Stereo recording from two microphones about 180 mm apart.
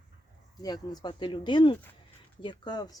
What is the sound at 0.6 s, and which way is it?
Speech, 20° left (ahead or behind).